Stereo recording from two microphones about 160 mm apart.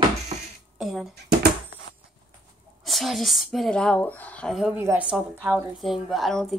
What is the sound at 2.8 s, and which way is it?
Speech, centre (ahead or behind).